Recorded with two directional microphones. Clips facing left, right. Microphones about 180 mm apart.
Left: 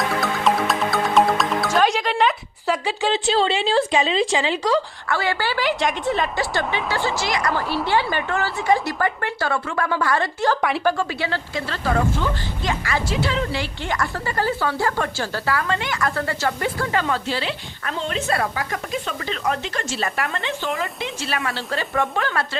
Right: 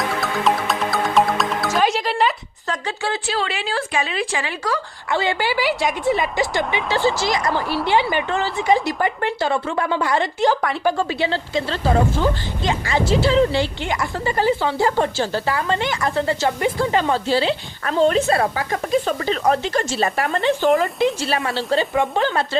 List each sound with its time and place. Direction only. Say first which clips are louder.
0.1 s music: even; centre (ahead or behind)
2.6 s speech: left 3 dB; 15° left (ahead or behind)
5.0 s a woman's voice: right 2 dB; 20° right (ahead or behind)
13.8 s speech: right 2 dB; 15° right (ahead or behind); by 21.5 s 35° right (ahead or behind)
21.7 s speech: right 5 dB; 20° right (ahead or behind)